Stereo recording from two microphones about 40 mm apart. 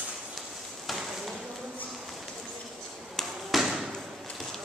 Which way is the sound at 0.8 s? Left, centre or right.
Centre.